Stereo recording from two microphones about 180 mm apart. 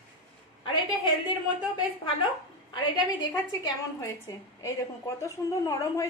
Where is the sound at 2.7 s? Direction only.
25° left (ahead or behind).